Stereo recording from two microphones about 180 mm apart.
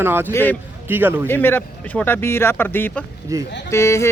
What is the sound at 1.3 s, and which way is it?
A man's voice, 10° left (ahead or behind).